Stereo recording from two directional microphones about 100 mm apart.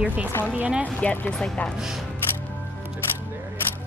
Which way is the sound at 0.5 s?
15° right (ahead or behind).